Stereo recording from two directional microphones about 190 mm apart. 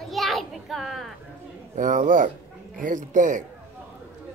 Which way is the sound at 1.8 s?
45° right (ahead or behind).